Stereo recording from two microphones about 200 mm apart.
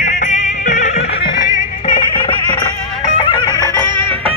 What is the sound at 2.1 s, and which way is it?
Music, 25° left (ahead or behind).